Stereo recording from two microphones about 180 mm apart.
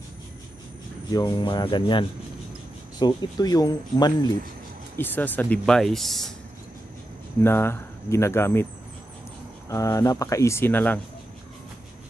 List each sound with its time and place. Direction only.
1.1 s speech: 25° left (ahead or behind)
4.9 s speech: 10° left (ahead or behind)
7.4 s speech: 15° left (ahead or behind)
9.7 s speech: 15° left (ahead or behind)